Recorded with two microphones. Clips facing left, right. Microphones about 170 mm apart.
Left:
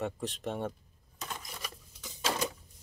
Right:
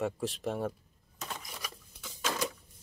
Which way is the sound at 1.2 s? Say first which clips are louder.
Even; centre (ahead or behind).